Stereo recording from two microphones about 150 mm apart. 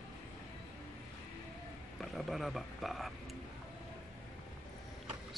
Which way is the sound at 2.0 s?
Centre (ahead or behind).